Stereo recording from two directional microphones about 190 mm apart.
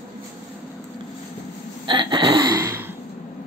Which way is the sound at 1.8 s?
25° right (ahead or behind).